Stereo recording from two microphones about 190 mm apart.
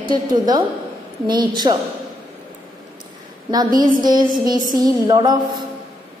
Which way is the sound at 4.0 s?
20° right (ahead or behind).